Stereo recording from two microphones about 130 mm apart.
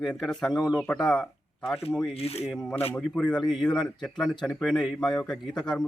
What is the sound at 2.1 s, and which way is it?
Speech, 50° left (ahead or behind).